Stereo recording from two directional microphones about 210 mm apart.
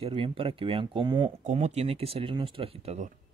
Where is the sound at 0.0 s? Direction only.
25° right (ahead or behind).